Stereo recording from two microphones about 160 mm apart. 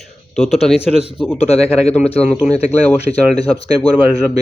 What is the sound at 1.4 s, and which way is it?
Speech, 40° left (ahead or behind).